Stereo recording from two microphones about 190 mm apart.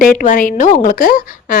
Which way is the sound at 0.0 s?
45° left (ahead or behind).